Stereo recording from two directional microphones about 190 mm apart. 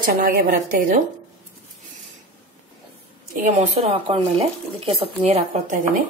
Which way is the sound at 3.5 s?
35° right (ahead or behind).